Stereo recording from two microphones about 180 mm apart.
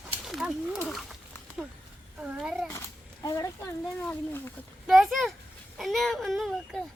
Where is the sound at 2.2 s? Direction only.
5° right (ahead or behind).